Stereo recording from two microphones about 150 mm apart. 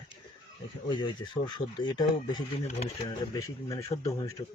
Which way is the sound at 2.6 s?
45° left (ahead or behind).